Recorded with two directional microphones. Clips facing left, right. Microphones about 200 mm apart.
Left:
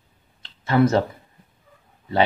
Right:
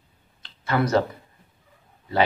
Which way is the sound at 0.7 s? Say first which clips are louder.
Left 3 dB; 25° left (ahead or behind).